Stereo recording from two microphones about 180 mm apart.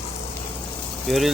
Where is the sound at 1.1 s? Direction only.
Centre (ahead or behind).